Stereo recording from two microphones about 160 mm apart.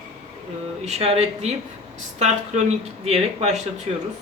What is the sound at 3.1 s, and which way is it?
Speech, 45° right (ahead or behind).